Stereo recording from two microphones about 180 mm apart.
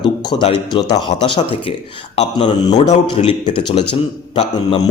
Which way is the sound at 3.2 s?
35° left (ahead or behind).